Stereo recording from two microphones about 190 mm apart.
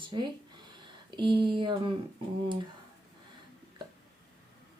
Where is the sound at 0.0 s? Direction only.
25° right (ahead or behind).